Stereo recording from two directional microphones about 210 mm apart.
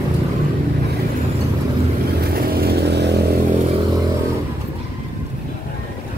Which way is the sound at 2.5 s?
50° right (ahead or behind).